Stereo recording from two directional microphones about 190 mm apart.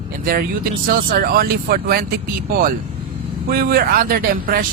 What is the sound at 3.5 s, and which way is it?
Speech, 55° right (ahead or behind).